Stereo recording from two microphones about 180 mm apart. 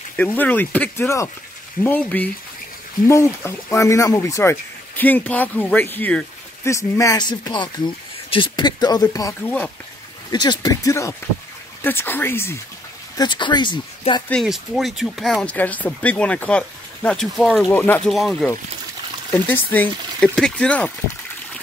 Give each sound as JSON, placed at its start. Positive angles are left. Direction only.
{"t": 0.2, "sound": "speech", "side_deg": 10}
{"t": 10.3, "sound": "speech", "side_deg": 25}
{"t": 13.2, "sound": "speech", "side_deg": 25}
{"t": 14.3, "sound": "speech", "side_deg": 0}